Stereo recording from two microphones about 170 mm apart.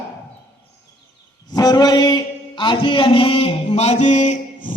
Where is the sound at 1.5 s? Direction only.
25° left (ahead or behind); by 4.7 s 45° left (ahead or behind).